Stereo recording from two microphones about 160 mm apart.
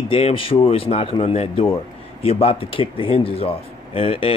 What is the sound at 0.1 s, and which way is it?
Speech, 35° left (ahead or behind).